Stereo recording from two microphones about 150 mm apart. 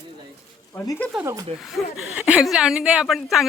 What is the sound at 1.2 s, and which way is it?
Speech, 25° right (ahead or behind).